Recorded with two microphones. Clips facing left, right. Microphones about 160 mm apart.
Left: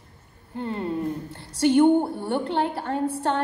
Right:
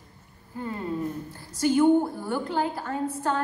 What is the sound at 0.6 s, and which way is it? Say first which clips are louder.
Speech: left 4 dB; 65° left (ahead or behind).